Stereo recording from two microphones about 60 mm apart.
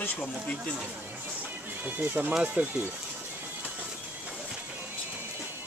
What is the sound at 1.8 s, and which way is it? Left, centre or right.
Speech, right.